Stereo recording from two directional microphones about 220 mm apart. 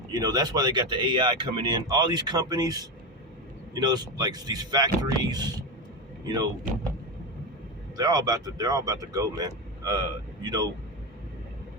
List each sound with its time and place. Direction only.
0.1 s speech: 20° right (ahead or behind)
7.9 s speech: 15° right (ahead or behind)